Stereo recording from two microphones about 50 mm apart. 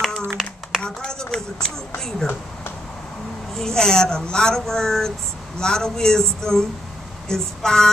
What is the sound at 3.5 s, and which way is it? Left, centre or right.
Speech, centre.